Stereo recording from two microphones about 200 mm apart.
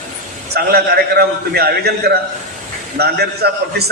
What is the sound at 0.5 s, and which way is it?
A man's voice, 50° right (ahead or behind).